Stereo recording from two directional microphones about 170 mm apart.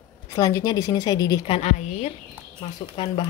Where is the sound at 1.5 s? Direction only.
40° left (ahead or behind).